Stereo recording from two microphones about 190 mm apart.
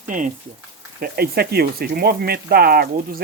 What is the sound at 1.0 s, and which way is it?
Speech, 55° right (ahead or behind).